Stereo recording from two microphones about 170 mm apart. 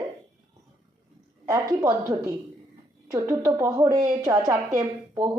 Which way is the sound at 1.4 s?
15° right (ahead or behind).